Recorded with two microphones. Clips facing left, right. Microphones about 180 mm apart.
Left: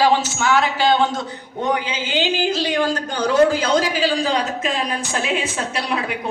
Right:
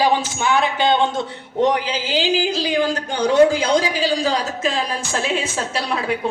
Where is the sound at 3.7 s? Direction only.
35° right (ahead or behind).